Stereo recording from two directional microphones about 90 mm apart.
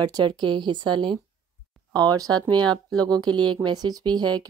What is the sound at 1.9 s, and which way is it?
Speech, 45° right (ahead or behind).